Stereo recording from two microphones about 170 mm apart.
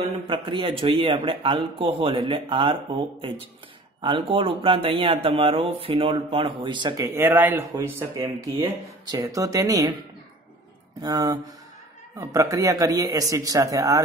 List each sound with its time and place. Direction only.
0.1 s speech: 30° right (ahead or behind)
7.1 s speech: 15° right (ahead or behind)
11.0 s speech: 20° right (ahead or behind)